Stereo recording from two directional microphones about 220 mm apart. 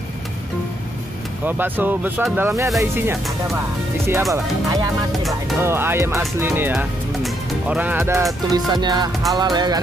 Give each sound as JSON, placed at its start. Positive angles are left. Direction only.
{"t": 1.4, "sound": "speech", "side_deg": -10}
{"t": 4.1, "sound": "speech", "side_deg": -15}
{"t": 8.5, "sound": "music", "side_deg": -20}
{"t": 9.3, "sound": "speech", "side_deg": -20}